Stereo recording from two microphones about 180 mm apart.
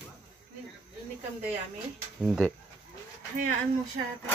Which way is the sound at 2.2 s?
Centre (ahead or behind).